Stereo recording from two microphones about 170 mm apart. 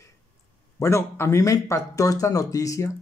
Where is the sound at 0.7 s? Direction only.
15° left (ahead or behind).